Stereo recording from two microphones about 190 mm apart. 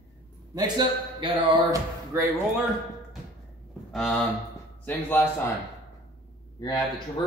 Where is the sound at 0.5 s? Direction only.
20° right (ahead or behind).